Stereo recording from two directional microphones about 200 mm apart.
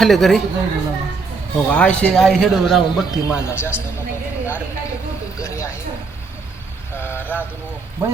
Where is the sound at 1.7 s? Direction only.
5° left (ahead or behind).